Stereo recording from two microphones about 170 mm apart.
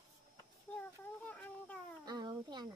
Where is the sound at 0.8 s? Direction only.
10° left (ahead or behind).